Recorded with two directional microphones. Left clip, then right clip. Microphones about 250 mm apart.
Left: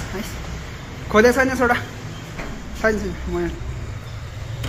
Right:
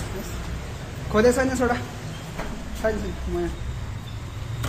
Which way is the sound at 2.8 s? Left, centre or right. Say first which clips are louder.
Left 5 dB; centre.